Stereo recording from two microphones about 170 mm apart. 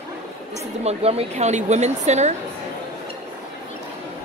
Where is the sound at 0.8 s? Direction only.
40° right (ahead or behind).